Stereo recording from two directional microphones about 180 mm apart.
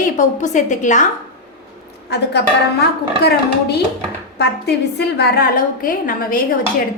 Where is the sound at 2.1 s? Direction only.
65° left (ahead or behind); by 6.4 s 50° left (ahead or behind).